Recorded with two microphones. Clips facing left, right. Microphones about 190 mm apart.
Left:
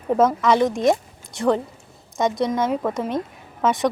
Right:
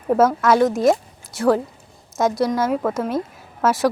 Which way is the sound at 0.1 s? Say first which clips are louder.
Right 2 dB; 5° right (ahead or behind).